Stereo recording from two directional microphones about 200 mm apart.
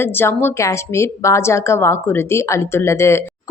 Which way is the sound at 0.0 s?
10° left (ahead or behind).